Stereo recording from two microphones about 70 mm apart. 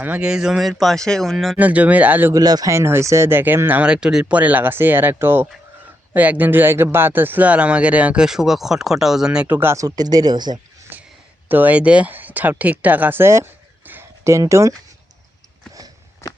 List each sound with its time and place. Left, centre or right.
0.2 s speech: centre
1.5 s speech: right
2.3 s speech: right
2.6 s speech: right
3.8 s speech: centre
4.4 s speech: right
9.5 s speech: right
9.7 s speech: right
10.9 s a sound: right
11.4 s speech: right
13.8 s a sound: right
14.3 s speech: right